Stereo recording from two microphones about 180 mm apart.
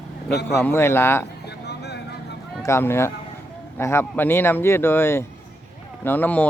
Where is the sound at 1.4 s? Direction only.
65° left (ahead or behind).